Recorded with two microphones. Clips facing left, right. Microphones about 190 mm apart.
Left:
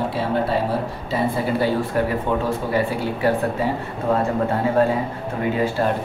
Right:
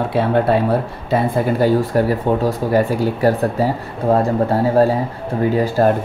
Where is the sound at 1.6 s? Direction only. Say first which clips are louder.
Right 7 dB; 40° right (ahead or behind).